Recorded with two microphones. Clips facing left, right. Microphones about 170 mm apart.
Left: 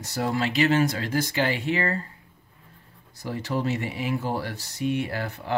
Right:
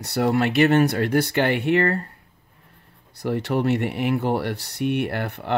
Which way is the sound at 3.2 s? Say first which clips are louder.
Right 5 dB; 65° right (ahead or behind).